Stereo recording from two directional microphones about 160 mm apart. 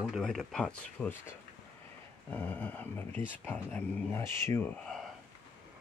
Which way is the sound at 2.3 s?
10° left (ahead or behind).